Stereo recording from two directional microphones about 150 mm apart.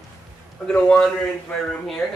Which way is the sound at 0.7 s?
5° left (ahead or behind).